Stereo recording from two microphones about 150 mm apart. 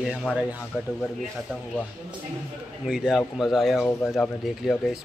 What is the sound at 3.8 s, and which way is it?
Speech, 10° left (ahead or behind).